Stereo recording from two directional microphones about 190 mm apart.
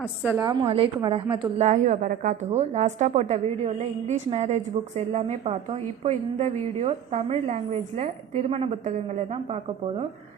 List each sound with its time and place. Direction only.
0.2 s a woman's voice: 10° right (ahead or behind)
0.4 s a woman's voice: 25° right (ahead or behind)